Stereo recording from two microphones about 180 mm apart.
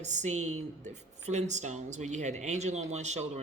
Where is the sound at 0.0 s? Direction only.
40° right (ahead or behind).